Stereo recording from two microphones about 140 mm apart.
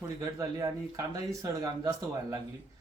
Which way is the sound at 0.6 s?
25° right (ahead or behind).